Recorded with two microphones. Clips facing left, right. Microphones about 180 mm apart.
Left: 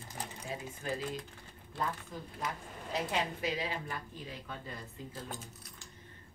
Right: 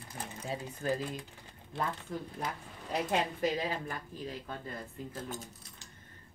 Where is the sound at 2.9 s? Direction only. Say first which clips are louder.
Right 3 dB; 50° right (ahead or behind).